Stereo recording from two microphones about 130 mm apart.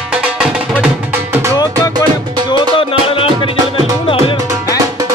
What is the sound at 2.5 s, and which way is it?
Music, 40° left (ahead or behind).